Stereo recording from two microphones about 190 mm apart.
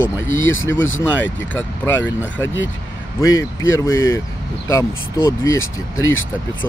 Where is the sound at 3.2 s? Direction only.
15° left (ahead or behind).